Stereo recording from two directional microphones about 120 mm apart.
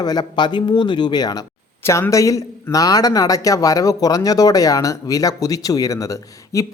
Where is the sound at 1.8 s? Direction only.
20° left (ahead or behind).